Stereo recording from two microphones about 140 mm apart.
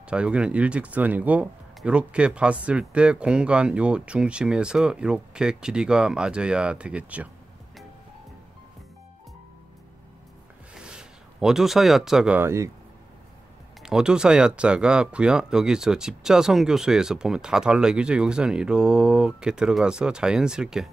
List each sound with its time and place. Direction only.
0.0 s speech: 5° right (ahead or behind)
10.7 s a sound: 5° right (ahead or behind)
12.4 s speech: 20° right (ahead or behind)
13.8 s speech: 5° right (ahead or behind)